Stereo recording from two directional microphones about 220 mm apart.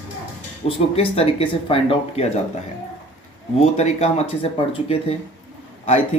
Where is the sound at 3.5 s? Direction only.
30° left (ahead or behind).